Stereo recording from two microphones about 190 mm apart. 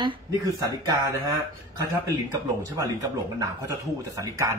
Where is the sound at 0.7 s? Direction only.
20° right (ahead or behind).